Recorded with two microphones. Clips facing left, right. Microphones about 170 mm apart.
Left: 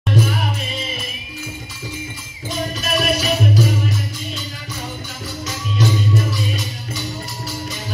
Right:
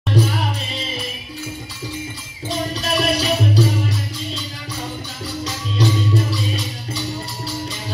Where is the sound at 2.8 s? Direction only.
30° right (ahead or behind).